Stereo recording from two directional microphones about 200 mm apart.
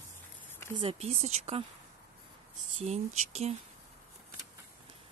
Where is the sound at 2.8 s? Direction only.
30° right (ahead or behind).